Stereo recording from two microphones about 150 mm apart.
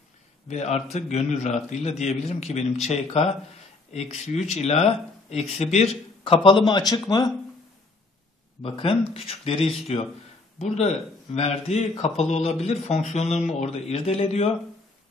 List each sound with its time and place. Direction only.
0.5 s speech: 50° left (ahead or behind); by 7.0 s 25° left (ahead or behind)
8.6 s speech: 40° left (ahead or behind)